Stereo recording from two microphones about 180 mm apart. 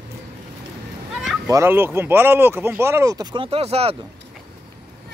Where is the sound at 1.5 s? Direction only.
15° right (ahead or behind); by 3.9 s 35° right (ahead or behind).